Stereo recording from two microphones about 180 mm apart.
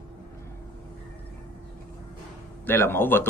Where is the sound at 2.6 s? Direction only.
10° left (ahead or behind).